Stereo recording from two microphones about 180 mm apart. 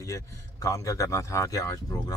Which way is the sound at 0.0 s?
15° left (ahead or behind).